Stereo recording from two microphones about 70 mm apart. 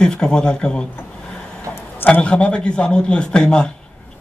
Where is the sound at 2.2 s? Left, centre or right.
Centre.